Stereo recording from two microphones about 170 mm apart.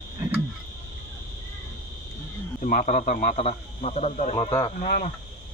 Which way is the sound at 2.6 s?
50° left (ahead or behind).